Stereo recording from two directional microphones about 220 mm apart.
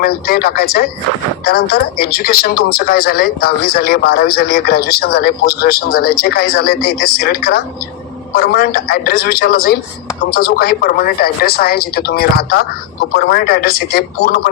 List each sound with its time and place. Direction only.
0.0 s speech: 45° left (ahead or behind)